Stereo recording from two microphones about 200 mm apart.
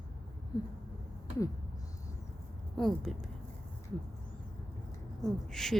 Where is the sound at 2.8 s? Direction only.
Centre (ahead or behind).